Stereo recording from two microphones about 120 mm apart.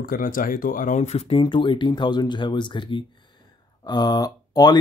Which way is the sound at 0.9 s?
70° left (ahead or behind).